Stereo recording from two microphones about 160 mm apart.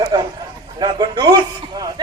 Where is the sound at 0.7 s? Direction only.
25° right (ahead or behind).